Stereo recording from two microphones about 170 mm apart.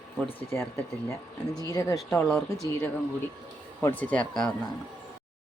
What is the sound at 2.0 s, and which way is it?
Speech, centre (ahead or behind).